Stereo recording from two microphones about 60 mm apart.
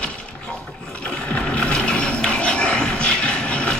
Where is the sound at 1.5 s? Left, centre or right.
Centre.